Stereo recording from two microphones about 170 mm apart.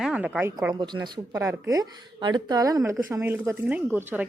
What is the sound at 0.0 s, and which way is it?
Speech, 5° right (ahead or behind).